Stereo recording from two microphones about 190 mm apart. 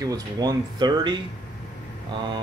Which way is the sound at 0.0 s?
20° right (ahead or behind).